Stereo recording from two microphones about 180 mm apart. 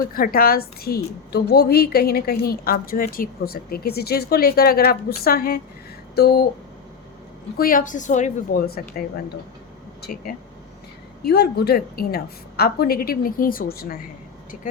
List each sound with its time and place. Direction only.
0.0 s a woman's voice: 55° left (ahead or behind)
7.5 s a woman's voice: 55° left (ahead or behind)
10.0 s a woman's voice: 55° left (ahead or behind)
14.5 s speech: 40° left (ahead or behind)